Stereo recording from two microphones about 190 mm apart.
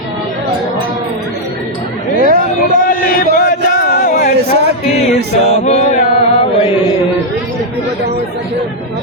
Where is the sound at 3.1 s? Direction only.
45° left (ahead or behind).